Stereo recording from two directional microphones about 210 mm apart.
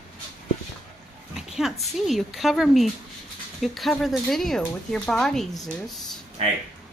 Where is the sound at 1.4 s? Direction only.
Centre (ahead or behind).